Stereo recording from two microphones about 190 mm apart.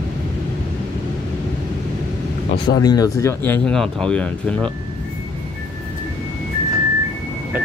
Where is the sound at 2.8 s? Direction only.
20° left (ahead or behind).